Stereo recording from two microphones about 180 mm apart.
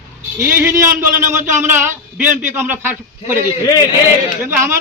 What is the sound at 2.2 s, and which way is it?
Speech, 45° right (ahead or behind).